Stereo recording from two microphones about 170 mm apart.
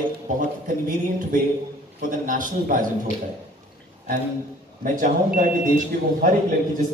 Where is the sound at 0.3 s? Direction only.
50° right (ahead or behind).